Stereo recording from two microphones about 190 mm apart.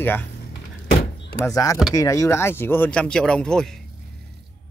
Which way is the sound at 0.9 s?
50° left (ahead or behind).